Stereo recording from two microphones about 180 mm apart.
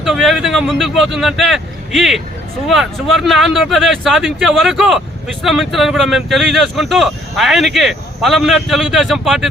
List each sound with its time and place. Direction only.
0.0 s speech: centre (ahead or behind)